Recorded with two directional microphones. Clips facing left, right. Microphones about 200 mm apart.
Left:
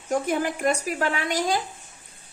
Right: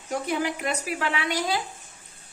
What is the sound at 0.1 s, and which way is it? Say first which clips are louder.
A woman's voice: left 3 dB; 50° left (ahead or behind).